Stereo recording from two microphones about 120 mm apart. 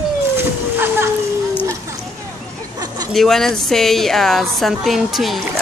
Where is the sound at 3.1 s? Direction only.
Centre (ahead or behind).